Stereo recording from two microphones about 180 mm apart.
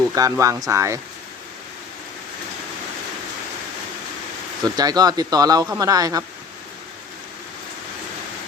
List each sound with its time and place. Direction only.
0.1 s speech: 20° right (ahead or behind)
4.6 s speech: 20° right (ahead or behind)